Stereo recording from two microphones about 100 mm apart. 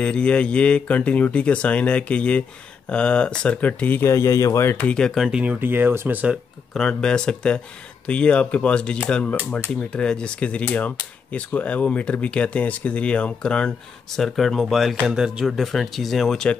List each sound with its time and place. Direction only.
0.0 s speech: 10° left (ahead or behind); by 4.6 s 35° left (ahead or behind)
4.6 s speech: 15° left (ahead or behind); by 5.4 s centre (ahead or behind)
5.4 s speech: 20° right (ahead or behind)
6.7 s speech: 5° left (ahead or behind)